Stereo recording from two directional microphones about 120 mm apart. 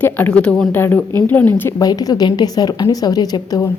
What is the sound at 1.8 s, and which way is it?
A woman's voice, 30° left (ahead or behind).